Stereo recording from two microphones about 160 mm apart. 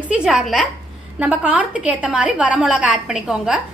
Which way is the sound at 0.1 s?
5° right (ahead or behind).